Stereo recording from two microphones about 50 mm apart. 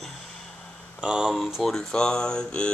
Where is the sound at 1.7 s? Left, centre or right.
Centre.